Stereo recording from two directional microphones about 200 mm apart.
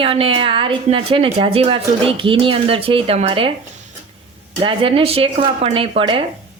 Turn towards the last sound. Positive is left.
turn(degrees=-25)  # may be behind; listen again after turning